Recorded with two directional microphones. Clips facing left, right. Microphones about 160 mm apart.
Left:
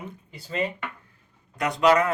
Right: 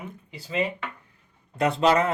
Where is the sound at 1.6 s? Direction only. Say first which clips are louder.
Even; 30° right (ahead or behind).